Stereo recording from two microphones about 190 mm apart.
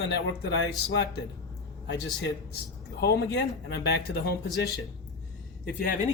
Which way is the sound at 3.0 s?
60° left (ahead or behind).